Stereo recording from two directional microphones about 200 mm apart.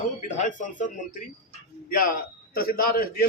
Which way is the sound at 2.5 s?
45° left (ahead or behind).